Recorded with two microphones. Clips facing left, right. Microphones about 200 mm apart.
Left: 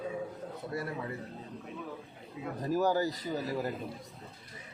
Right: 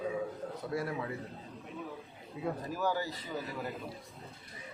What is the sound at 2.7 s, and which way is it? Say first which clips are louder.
Speech: left 9 dB; 40° left (ahead or behind).